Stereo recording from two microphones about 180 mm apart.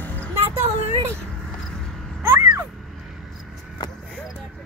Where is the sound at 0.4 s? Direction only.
15° right (ahead or behind).